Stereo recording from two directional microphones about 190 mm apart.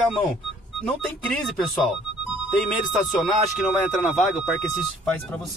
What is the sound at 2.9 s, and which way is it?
Speech, centre (ahead or behind).